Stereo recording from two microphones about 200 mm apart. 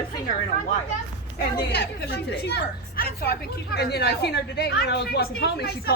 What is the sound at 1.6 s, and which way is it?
A woman's voice, 55° left (ahead or behind).